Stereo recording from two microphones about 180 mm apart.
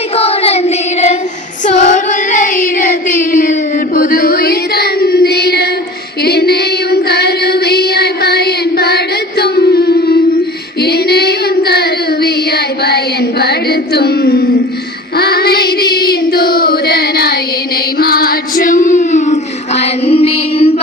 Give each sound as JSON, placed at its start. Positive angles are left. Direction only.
{"t": 0.2, "sound": "child singing", "side_deg": 35}
{"t": 1.7, "sound": "child singing", "side_deg": 40}
{"t": 10.8, "sound": "singing", "side_deg": 60}
{"t": 12.8, "sound": "a sound", "side_deg": 65}
{"t": 15.1, "sound": "child singing", "side_deg": 60}